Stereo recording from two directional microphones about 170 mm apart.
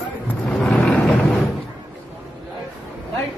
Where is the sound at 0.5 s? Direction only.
5° left (ahead or behind).